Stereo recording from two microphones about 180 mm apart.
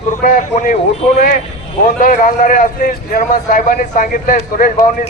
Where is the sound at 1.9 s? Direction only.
45° left (ahead or behind).